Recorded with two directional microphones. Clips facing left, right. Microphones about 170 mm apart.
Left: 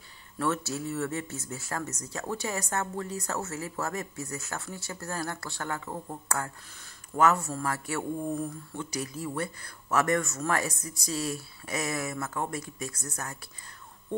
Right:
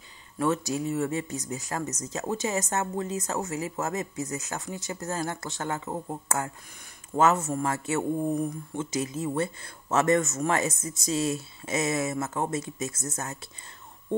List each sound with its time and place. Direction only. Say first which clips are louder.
0.4 s speech: right 4 dB; 15° right (ahead or behind)